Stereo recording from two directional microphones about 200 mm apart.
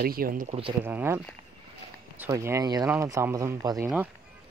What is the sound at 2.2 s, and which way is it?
Speech, 15° right (ahead or behind).